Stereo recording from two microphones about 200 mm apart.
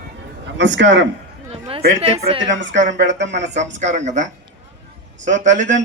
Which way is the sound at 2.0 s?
30° right (ahead or behind).